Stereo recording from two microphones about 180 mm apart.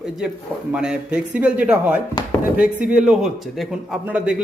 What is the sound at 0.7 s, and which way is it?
A man's voice, 5° right (ahead or behind).